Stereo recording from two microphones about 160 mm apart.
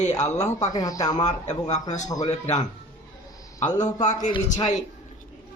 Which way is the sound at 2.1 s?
25° left (ahead or behind).